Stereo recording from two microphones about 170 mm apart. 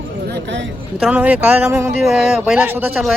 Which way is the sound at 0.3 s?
85° right.